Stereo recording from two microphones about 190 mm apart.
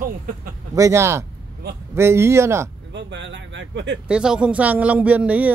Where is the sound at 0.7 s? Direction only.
15° right (ahead or behind).